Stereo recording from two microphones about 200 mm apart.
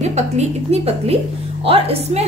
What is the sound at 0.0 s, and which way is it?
A woman's voice, 35° right (ahead or behind).